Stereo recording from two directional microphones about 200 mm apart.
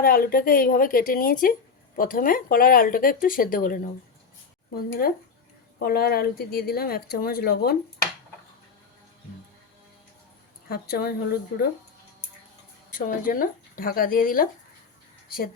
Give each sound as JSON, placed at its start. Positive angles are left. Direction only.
{"t": 0.0, "sound": "speech", "side_deg": 45}
{"t": 10.7, "sound": "speech", "side_deg": 50}
{"t": 13.1, "sound": "speech", "side_deg": 45}